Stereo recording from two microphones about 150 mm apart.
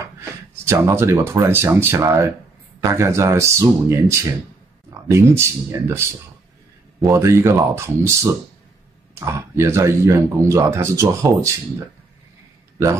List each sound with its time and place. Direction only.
0.0 s speech: 15° right (ahead or behind)
7.1 s speech: 20° right (ahead or behind)